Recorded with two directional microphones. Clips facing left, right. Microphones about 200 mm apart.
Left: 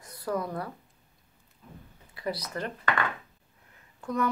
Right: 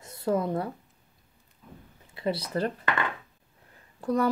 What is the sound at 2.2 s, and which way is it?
Speech, 25° right (ahead or behind).